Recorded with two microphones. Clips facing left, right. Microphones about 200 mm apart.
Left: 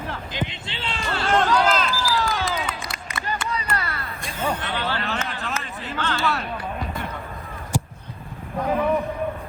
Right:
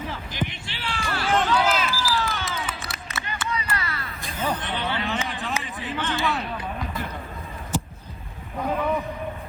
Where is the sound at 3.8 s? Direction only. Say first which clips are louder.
Left 2 dB; 55° left (ahead or behind).